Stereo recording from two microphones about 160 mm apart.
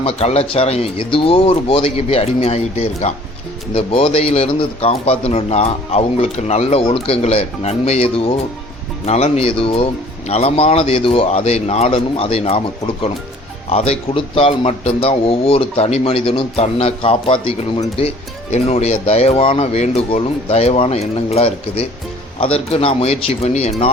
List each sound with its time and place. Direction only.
0.0 s speech: 40° left (ahead or behind)